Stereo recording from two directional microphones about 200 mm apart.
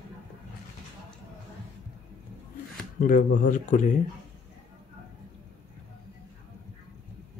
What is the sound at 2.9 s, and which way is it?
Speech, 40° left (ahead or behind).